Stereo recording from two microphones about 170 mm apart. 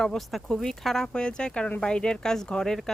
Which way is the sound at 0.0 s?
Centre (ahead or behind).